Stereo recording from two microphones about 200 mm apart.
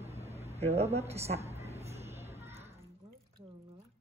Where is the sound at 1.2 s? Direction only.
30° right (ahead or behind).